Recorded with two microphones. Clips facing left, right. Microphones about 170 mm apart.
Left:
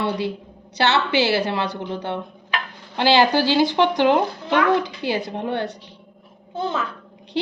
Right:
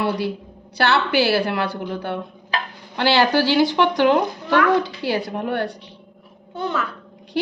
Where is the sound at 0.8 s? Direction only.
20° left (ahead or behind).